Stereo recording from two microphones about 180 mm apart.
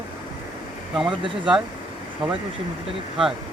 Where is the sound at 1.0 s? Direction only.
25° right (ahead or behind).